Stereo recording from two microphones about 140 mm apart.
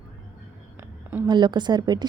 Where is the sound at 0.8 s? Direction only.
15° right (ahead or behind).